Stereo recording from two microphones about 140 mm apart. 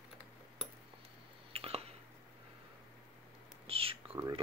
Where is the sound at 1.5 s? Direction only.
45° right (ahead or behind).